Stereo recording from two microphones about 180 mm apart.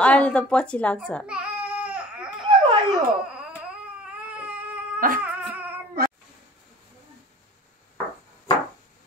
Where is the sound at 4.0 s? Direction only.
5° right (ahead or behind).